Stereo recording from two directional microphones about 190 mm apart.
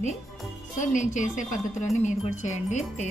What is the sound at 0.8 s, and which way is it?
Speech, 40° left (ahead or behind).